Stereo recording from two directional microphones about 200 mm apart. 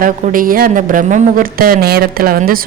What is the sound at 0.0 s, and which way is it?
Speech, 45° right (ahead or behind).